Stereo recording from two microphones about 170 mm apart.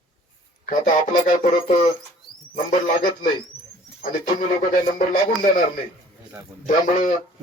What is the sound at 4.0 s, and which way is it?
Speech, 55° left (ahead or behind).